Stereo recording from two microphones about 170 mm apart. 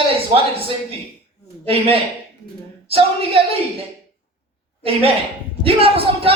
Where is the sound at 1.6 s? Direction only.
35° right (ahead or behind).